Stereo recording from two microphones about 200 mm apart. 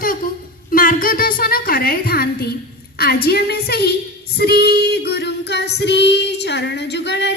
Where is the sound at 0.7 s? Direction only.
45° left (ahead or behind).